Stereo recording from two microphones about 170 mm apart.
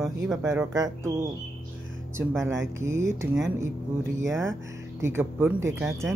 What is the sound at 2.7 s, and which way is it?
Speech, 15° right (ahead or behind).